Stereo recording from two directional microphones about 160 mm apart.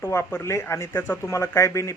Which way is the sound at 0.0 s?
15° left (ahead or behind).